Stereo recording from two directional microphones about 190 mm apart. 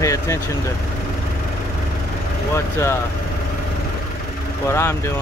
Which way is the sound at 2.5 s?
15° left (ahead or behind).